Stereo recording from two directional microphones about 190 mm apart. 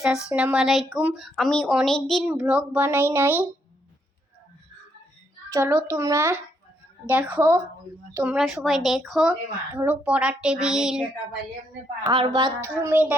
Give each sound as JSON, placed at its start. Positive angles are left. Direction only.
{"t": 0.3, "sound": "speech", "side_deg": -5}
{"t": 5.5, "sound": "speech", "side_deg": -15}
{"t": 12.0, "sound": "speech", "side_deg": -25}
{"t": 12.8, "sound": "speech", "side_deg": -10}